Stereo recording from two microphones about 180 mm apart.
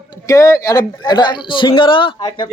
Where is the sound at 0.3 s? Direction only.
20° left (ahead or behind).